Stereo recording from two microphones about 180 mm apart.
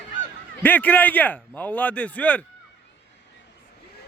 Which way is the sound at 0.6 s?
10° left (ahead or behind).